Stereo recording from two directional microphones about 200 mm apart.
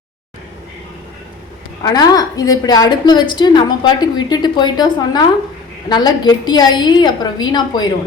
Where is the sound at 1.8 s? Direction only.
20° left (ahead or behind).